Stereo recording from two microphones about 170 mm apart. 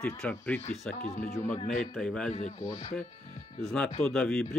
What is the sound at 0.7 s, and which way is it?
Speech, 45° left (ahead or behind).